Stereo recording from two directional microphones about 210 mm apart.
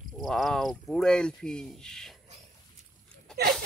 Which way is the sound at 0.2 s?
Centre (ahead or behind).